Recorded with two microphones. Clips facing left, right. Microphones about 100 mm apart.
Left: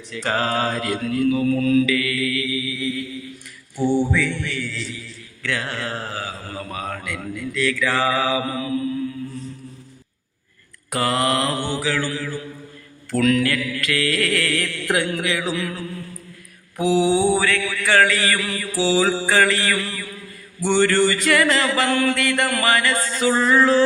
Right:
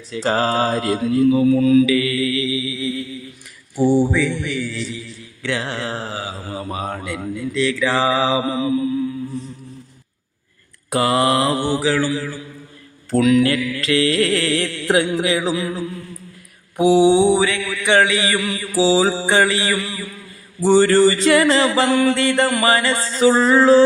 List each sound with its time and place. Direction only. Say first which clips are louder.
0.1 s mantra: right 4 dB; 25° right (ahead or behind)
1.9 s mantra: right 4 dB; 25° right (ahead or behind)
3.8 s a man's voice: right 4 dB; 15° right (ahead or behind)
5.4 s mantra: right 3 dB; 20° right (ahead or behind)
10.9 s mantra: right 4 dB; 20° right (ahead or behind)
13.4 s mantra: right 4 dB; 25° right (ahead or behind)
20.6 s a sound: right 5 dB; 35° right (ahead or behind)
22.0 s mantra: right 4 dB; 30° right (ahead or behind)